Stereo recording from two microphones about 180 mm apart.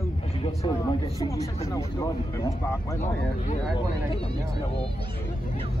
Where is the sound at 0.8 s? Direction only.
20° left (ahead or behind).